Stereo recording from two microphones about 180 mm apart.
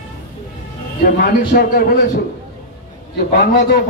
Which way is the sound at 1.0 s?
60° left (ahead or behind).